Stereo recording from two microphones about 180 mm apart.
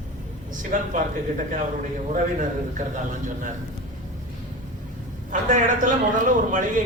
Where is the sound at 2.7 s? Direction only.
45° right (ahead or behind).